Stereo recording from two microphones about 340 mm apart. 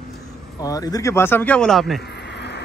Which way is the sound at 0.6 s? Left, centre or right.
Centre.